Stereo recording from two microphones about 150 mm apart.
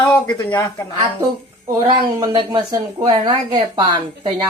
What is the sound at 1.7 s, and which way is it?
Speech, 30° right (ahead or behind).